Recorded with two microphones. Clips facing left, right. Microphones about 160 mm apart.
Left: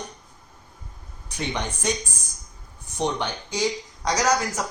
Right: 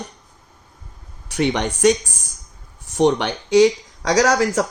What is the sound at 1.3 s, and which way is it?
Speech, 70° right (ahead or behind).